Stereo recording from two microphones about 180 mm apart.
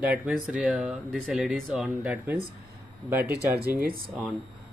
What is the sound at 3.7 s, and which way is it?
Speech, 55° right (ahead or behind).